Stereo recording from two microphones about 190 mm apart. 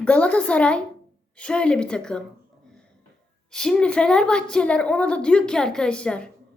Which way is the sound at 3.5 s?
5° left (ahead or behind).